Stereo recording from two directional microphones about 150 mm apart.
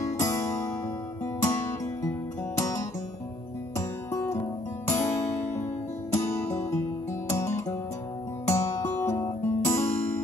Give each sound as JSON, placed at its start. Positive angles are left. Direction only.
{"t": 1.2, "sound": "music", "side_deg": 20}